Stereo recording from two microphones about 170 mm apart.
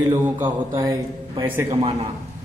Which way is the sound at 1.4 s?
15° right (ahead or behind).